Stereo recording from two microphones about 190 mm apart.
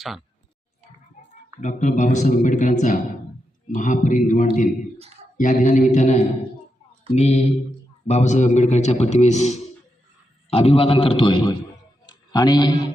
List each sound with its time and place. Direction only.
1.6 s a man's voice: 40° left (ahead or behind); by 12.9 s 20° left (ahead or behind)